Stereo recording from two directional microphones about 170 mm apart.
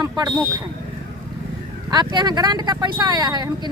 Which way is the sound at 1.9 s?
25° right (ahead or behind).